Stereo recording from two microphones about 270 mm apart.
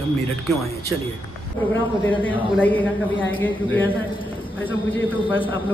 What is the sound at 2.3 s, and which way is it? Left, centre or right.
Speech, centre.